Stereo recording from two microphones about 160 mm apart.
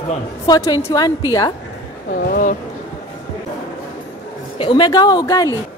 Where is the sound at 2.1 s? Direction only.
60° left (ahead or behind).